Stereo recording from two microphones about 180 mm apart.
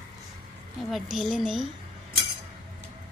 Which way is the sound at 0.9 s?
Centre (ahead or behind).